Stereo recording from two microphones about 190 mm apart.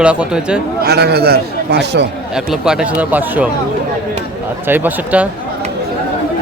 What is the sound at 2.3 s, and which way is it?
Speech, 5° right (ahead or behind).